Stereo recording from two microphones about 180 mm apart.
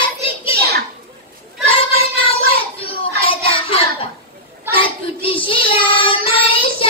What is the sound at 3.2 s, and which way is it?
Child singing, 30° left (ahead or behind).